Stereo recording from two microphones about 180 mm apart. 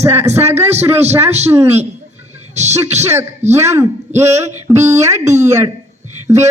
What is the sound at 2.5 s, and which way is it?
Speech, 40° right (ahead or behind).